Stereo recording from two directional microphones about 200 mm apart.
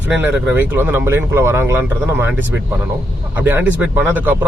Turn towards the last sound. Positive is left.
turn(degrees=-10)  # may be behind; listen again after turning